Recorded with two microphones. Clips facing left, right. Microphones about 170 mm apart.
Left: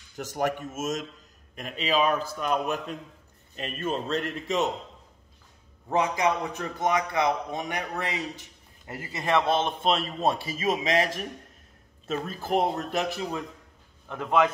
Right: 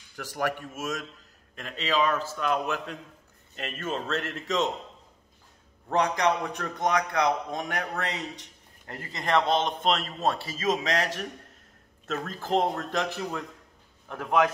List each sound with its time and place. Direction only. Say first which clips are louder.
0.1 s a man's voice: left 2 dB; 20° left (ahead or behind)
5.9 s a man's voice: even; 5° left (ahead or behind)
12.3 s a man's voice: even; 10° left (ahead or behind)
14.0 s a man's voice: left 1 dB; 10° right (ahead or behind)